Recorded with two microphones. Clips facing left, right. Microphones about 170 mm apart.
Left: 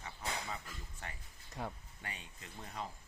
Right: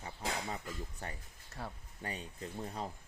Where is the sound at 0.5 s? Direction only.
35° right (ahead or behind).